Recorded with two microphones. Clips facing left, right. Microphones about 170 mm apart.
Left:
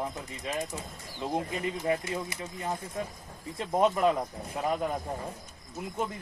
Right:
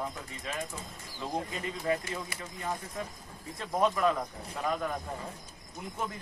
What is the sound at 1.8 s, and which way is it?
Speech, 20° left (ahead or behind).